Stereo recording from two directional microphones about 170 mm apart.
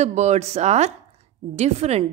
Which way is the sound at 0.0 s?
40° right (ahead or behind).